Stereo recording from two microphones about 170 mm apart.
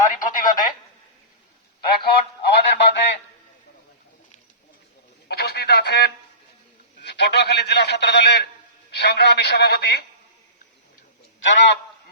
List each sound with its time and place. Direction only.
0.1 s speech: 50° left (ahead or behind)
2.0 s a sound: 75° left (ahead or behind)
5.3 s telephone: 70° left (ahead or behind)
7.0 s a sound: 85° left
8.9 s a man's voice: 75° left (ahead or behind)
11.3 s speech: 90° left